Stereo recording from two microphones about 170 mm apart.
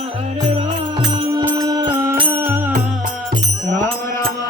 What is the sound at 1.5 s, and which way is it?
Music, 20° right (ahead or behind).